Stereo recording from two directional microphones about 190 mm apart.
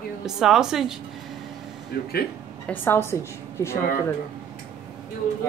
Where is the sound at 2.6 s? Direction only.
10° left (ahead or behind).